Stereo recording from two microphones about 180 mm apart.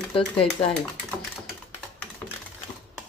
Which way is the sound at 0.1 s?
30° left (ahead or behind).